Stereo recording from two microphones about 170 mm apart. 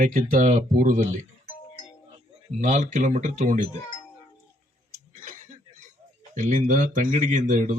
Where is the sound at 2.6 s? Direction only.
45° right (ahead or behind).